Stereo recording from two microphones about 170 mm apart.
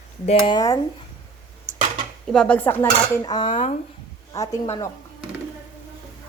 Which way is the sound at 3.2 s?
25° left (ahead or behind).